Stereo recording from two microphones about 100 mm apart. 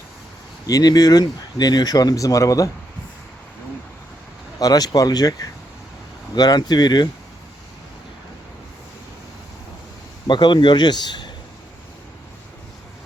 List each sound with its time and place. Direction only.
0.7 s speech: 40° left (ahead or behind)
4.6 s speech: 40° left (ahead or behind)
10.2 s speech: 50° left (ahead or behind)